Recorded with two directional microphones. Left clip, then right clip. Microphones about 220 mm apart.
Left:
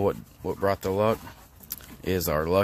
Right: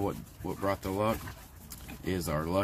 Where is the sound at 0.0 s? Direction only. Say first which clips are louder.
Left 8 dB; 45° left (ahead or behind).